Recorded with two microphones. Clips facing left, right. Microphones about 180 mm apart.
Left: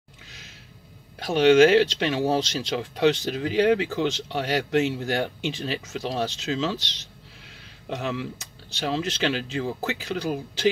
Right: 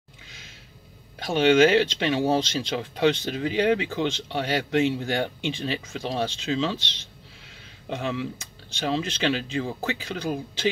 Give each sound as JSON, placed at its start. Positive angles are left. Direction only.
{"t": 1.2, "sound": "speech", "side_deg": 5}
{"t": 6.8, "sound": "speech", "side_deg": 40}
{"t": 8.0, "sound": "speech", "side_deg": 0}